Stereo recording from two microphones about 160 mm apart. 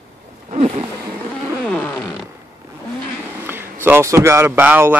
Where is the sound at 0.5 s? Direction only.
40° right (ahead or behind).